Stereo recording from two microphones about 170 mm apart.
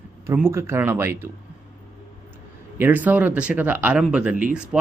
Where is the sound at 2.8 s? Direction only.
10° right (ahead or behind).